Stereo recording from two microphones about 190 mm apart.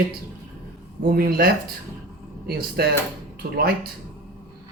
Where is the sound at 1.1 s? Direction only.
50° right (ahead or behind).